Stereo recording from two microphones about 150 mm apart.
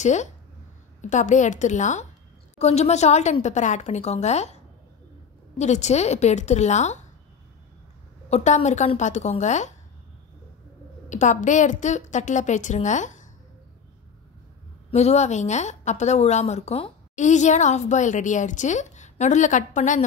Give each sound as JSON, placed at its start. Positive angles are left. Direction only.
{"t": 0.0, "sound": "a woman's voice", "side_deg": 50}
{"t": 5.6, "sound": "a woman's voice", "side_deg": 50}
{"t": 8.3, "sound": "a woman's voice", "side_deg": 50}
{"t": 11.1, "sound": "a woman's voice", "side_deg": 55}
{"t": 14.9, "sound": "a woman's voice", "side_deg": 45}
{"t": 17.1, "sound": "a woman's voice", "side_deg": 50}